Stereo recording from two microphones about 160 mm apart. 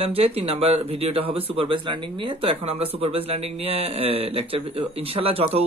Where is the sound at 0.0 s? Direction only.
35° right (ahead or behind).